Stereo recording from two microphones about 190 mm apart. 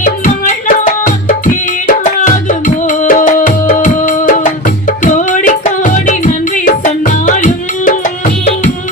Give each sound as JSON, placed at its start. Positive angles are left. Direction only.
{"t": 0.0, "sound": "music", "side_deg": 45}